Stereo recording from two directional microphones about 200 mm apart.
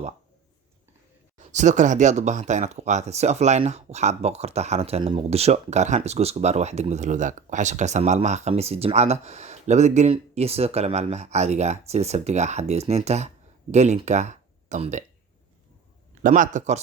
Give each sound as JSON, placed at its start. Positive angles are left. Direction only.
{"t": 1.4, "sound": "speech", "side_deg": -35}
{"t": 16.2, "sound": "speech", "side_deg": -40}